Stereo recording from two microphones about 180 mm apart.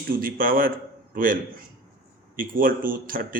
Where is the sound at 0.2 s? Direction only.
50° right (ahead or behind).